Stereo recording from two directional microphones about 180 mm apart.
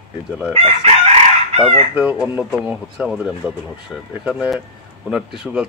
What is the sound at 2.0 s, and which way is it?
Speech, 10° right (ahead or behind).